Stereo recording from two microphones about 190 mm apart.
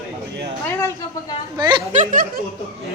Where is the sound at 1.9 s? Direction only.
40° right (ahead or behind).